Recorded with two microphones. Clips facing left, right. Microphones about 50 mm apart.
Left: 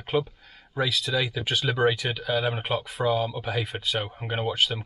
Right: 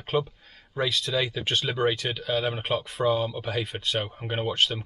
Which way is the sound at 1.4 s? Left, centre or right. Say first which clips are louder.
Left 2 dB; centre.